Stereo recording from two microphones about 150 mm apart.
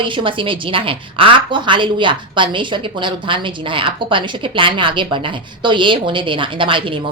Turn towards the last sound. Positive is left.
turn(degrees=-35)  # may be behind; listen again after turning